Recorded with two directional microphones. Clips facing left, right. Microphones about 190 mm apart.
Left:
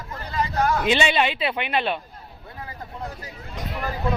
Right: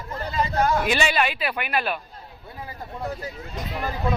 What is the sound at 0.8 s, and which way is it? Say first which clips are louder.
Speech: left 2 dB; 20° left (ahead or behind).